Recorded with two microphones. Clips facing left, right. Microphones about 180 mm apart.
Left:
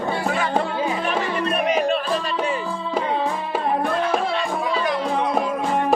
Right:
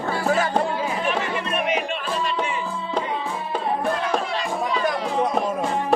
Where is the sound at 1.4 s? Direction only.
35° left (ahead or behind).